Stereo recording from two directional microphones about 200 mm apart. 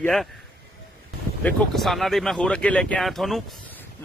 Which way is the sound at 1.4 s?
5° left (ahead or behind).